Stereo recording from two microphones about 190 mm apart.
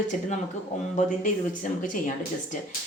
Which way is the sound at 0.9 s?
45° left (ahead or behind).